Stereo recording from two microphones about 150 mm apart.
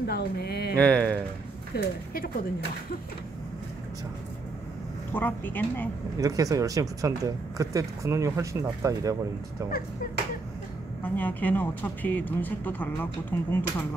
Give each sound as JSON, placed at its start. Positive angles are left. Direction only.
{"t": 0.0, "sound": "speech", "side_deg": 90}
{"t": 0.7, "sound": "speech", "side_deg": 10}
{"t": 1.7, "sound": "speech", "side_deg": 90}
{"t": 5.1, "sound": "speech", "side_deg": 15}
{"t": 6.1, "sound": "speech", "side_deg": -25}
{"t": 11.0, "sound": "speech", "side_deg": 10}